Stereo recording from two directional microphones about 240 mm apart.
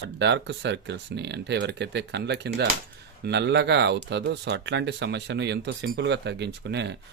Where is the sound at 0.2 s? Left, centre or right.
Right.